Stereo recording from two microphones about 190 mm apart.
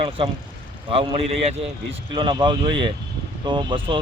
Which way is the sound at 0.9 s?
30° right (ahead or behind).